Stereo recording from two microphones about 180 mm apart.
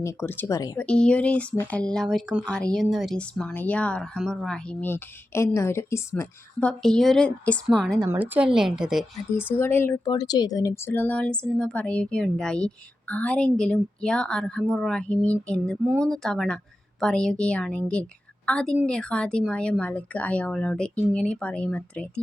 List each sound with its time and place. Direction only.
0.0 s speech: 15° left (ahead or behind)
0.9 s speech: 5° left (ahead or behind)
7.8 s speech: 5° right (ahead or behind)
9.5 s speech: 10° left (ahead or behind)